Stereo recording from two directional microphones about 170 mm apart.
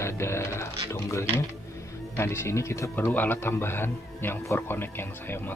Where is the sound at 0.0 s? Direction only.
15° left (ahead or behind).